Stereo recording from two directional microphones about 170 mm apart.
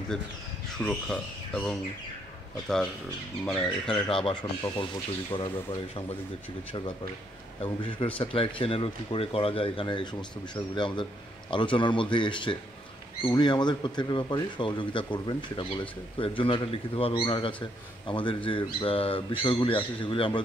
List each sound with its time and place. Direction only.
0.7 s speech: 5° left (ahead or behind)
3.4 s speech: 5° left (ahead or behind)
5.3 s a man's voice: 30° left (ahead or behind)
7.6 s a man's voice: 30° left (ahead or behind)